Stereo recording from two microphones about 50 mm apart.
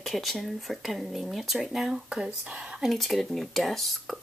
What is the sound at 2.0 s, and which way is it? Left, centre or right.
Speech, centre.